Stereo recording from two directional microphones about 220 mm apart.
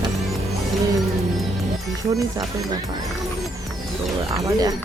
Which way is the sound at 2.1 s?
15° right (ahead or behind).